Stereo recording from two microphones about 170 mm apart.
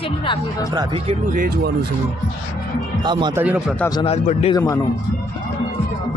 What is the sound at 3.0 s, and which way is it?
Speech, 25° right (ahead or behind).